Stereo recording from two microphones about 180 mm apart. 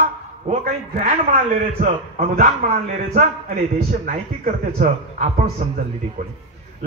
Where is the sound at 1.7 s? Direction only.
55° right (ahead or behind).